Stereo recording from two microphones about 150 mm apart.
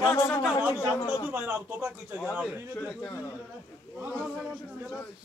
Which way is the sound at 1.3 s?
10° right (ahead or behind).